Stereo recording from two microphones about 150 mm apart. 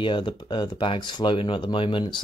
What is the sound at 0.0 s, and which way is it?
Speech, 35° left (ahead or behind).